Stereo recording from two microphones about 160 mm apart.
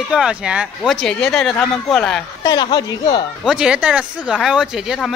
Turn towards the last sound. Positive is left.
turn(degrees=0)  # may be behind; listen again after turning